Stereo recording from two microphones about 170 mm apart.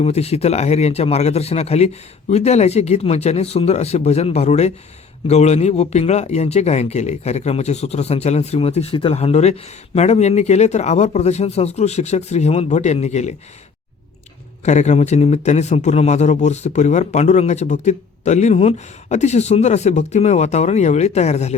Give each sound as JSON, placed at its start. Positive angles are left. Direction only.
{"t": 0.0, "sound": "speech", "side_deg": 40}
{"t": 14.6, "sound": "speech", "side_deg": 45}